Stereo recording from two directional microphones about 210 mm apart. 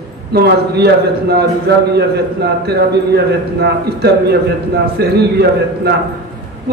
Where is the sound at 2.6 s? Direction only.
50° right (ahead or behind).